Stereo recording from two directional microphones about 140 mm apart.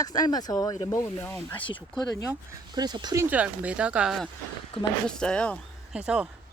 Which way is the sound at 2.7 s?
30° right (ahead or behind).